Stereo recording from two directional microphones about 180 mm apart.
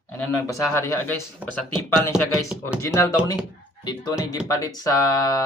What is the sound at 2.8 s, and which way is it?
Speech, 15° left (ahead or behind).